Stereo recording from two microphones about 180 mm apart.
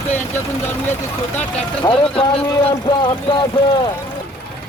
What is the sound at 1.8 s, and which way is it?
Speech, 30° left (ahead or behind).